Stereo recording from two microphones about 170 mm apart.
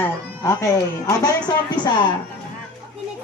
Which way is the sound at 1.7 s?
25° left (ahead or behind).